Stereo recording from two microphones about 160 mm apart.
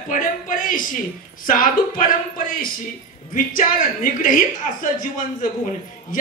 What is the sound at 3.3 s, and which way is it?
Speech, 60° left (ahead or behind).